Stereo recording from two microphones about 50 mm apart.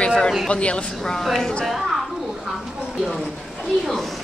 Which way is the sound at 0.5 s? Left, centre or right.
Left.